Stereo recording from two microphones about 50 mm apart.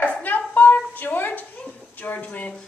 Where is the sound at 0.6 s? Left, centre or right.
Left.